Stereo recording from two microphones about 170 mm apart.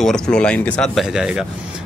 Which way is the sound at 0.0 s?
5° left (ahead or behind).